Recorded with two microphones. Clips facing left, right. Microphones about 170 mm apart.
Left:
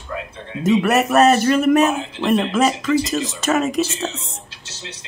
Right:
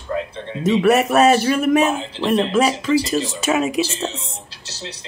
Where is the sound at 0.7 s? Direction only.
Centre (ahead or behind).